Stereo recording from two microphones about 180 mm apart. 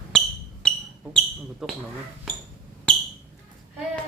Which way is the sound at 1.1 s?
5° left (ahead or behind).